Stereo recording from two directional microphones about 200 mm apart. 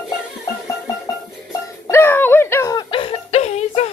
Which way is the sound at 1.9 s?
10° left (ahead or behind).